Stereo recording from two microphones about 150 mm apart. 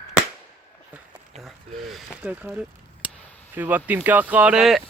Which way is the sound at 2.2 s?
10° right (ahead or behind).